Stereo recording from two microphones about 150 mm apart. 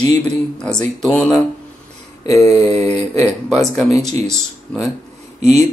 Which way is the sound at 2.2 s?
20° left (ahead or behind).